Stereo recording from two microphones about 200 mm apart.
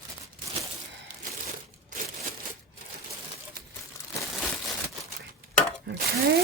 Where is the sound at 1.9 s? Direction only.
40° right (ahead or behind).